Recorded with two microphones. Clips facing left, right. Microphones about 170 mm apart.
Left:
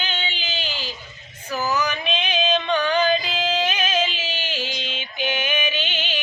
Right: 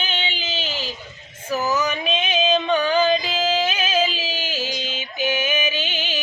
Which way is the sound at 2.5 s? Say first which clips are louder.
Right 2 dB; 5° right (ahead or behind).